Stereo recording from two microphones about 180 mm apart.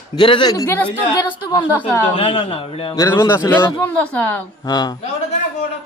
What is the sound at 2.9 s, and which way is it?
A man's voice, 20° left (ahead or behind).